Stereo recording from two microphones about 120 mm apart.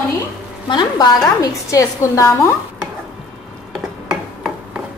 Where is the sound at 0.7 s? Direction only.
35° left (ahead or behind).